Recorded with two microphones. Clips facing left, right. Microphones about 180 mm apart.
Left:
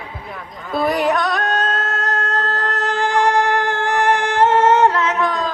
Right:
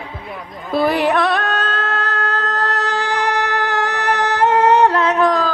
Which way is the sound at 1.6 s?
30° right (ahead or behind).